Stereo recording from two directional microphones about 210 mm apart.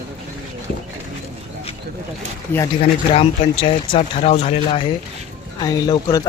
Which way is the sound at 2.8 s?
25° left (ahead or behind).